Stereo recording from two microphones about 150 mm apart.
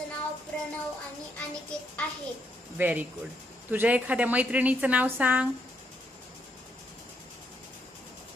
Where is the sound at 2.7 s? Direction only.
10° right (ahead or behind).